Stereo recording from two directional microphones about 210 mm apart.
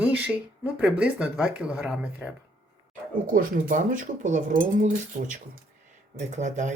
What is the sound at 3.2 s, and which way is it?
Speech, 40° right (ahead or behind).